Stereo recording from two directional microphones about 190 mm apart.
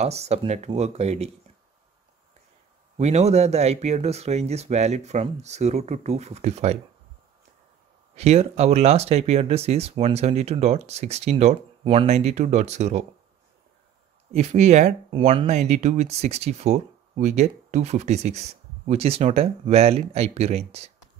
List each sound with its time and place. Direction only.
0.0 s speech: 35° right (ahead or behind)
3.0 s speech: 35° right (ahead or behind)
8.2 s speech: 35° right (ahead or behind)
14.3 s speech: 35° right (ahead or behind)